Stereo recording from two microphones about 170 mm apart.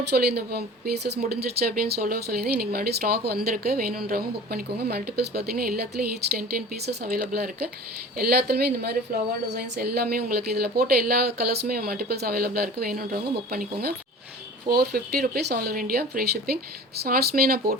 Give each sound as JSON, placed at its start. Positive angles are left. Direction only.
{"t": 0.1, "sound": "a woman's voice", "side_deg": -70}
{"t": 14.7, "sound": "a woman's voice", "side_deg": -65}